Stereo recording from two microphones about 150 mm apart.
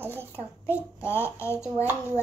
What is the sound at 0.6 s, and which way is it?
A child's voice, 15° left (ahead or behind).